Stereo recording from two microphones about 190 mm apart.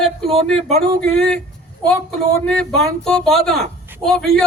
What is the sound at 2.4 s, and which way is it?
Speech, 5° left (ahead or behind).